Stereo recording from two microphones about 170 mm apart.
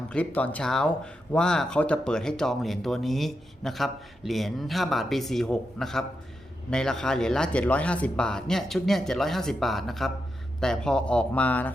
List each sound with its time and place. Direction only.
0.1 s speech: 10° left (ahead or behind)